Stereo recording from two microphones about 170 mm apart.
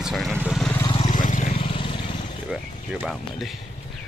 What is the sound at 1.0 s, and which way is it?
Vehicle, 50° left (ahead or behind).